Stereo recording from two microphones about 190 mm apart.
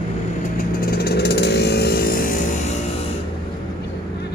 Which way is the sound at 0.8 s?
55° left (ahead or behind).